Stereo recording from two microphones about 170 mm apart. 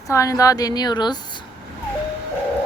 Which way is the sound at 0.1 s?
20° left (ahead or behind).